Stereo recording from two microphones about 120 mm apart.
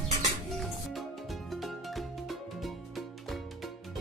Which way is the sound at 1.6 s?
Centre (ahead or behind).